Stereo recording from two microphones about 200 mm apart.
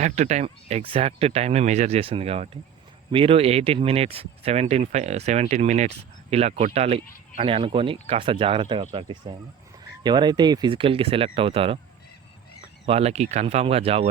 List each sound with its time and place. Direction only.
0.0 s speech: 35° right (ahead or behind)
12.8 s speech: 30° right (ahead or behind)